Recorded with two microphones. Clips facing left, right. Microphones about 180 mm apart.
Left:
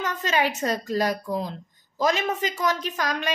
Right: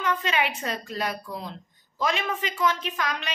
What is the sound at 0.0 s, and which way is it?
A woman's voice, 40° left (ahead or behind).